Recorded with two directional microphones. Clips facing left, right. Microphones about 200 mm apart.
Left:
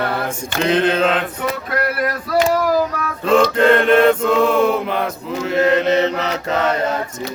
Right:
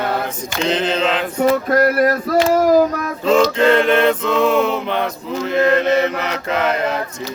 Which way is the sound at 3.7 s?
Centre (ahead or behind).